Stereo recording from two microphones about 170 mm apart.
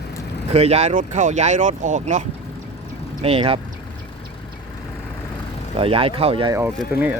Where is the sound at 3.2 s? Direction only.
35° right (ahead or behind).